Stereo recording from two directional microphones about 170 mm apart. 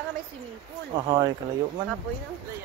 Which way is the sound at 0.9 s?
25° right (ahead or behind).